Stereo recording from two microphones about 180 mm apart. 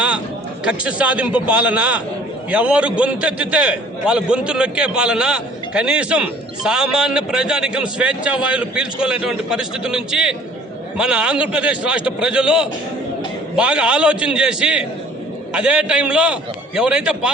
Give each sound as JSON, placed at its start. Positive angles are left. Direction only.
{"t": 0.6, "sound": "a man's voice", "side_deg": -5}